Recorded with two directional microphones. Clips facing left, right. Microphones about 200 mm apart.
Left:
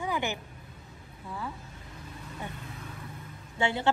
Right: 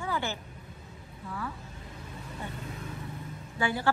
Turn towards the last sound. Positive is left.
turn(degrees=25)  # may be behind; listen again after turning